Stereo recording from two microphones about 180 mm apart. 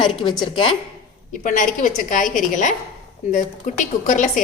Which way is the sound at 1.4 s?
45° left (ahead or behind).